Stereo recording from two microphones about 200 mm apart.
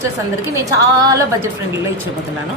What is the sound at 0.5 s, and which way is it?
Music, 15° right (ahead or behind).